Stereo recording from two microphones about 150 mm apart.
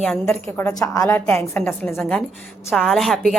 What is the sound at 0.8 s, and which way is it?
A woman's voice, 20° left (ahead or behind).